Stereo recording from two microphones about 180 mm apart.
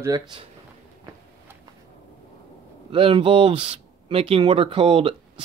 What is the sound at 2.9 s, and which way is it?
Speech, 30° right (ahead or behind).